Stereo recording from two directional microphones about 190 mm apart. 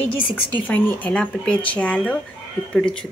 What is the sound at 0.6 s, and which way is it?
Speech, 10° left (ahead or behind).